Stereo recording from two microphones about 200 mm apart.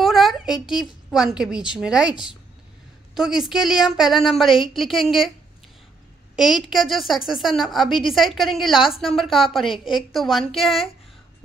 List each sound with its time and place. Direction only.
0.0 s a sound: centre (ahead or behind)
1.1 s a woman's voice: centre (ahead or behind)
3.2 s a woman's voice: centre (ahead or behind)
6.3 s a woman's voice: centre (ahead or behind)
9.7 s a woman's voice: 25° left (ahead or behind)
10.1 s a woman's voice: centre (ahead or behind)